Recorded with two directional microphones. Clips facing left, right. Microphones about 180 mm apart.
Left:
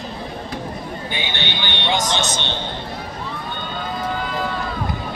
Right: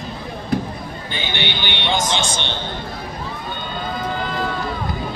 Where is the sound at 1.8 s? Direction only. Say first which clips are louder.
Even; 20° left (ahead or behind).